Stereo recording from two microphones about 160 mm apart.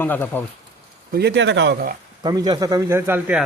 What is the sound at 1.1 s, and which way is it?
Speech, 90° right.